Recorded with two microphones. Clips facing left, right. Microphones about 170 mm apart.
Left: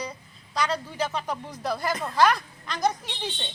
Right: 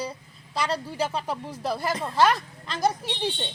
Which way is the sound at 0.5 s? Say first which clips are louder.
Even; 30° right (ahead or behind).